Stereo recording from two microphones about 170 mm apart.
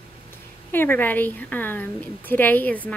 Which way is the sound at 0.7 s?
10° left (ahead or behind).